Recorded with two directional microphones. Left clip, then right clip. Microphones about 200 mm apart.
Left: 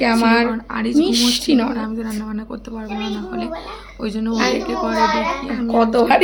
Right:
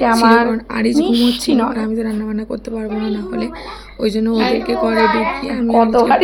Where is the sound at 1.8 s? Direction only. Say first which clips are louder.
Right 5 dB; 20° right (ahead or behind).